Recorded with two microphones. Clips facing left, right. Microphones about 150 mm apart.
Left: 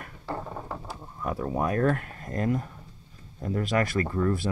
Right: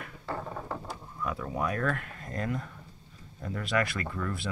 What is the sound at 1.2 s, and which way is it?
Speech, 35° left (ahead or behind).